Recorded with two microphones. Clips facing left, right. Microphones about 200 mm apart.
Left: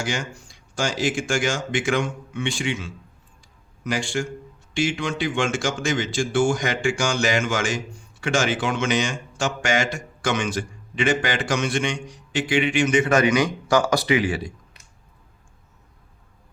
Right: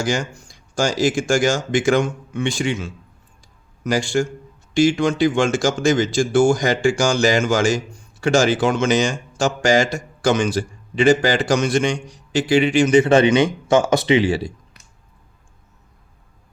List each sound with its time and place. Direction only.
0.0 s speech: 40° right (ahead or behind)